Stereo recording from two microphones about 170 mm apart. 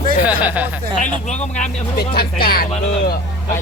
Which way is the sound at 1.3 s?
45° left (ahead or behind).